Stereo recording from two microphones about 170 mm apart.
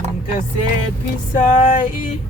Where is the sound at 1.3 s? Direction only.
50° left (ahead or behind).